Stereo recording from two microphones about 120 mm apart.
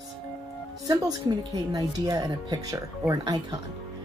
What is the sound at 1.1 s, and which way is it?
Speech, 30° right (ahead or behind).